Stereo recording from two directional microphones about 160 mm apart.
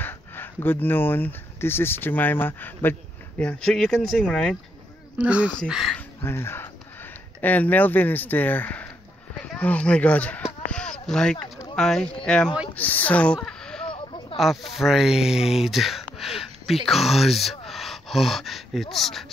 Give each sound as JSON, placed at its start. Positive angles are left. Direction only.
{"t": 0.0, "sound": "speech", "side_deg": 15}
{"t": 5.2, "sound": "speech", "side_deg": -5}
{"t": 5.9, "sound": "speech", "side_deg": 15}
{"t": 13.8, "sound": "a sound", "side_deg": 30}
{"t": 14.3, "sound": "speech", "side_deg": 0}